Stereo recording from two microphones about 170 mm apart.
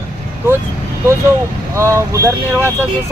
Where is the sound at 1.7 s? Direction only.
15° right (ahead or behind).